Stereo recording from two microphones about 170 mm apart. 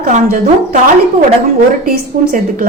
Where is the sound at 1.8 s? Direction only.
55° right (ahead or behind).